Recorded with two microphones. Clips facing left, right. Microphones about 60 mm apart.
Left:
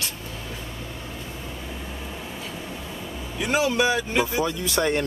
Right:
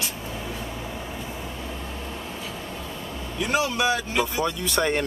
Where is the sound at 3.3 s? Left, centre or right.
Centre.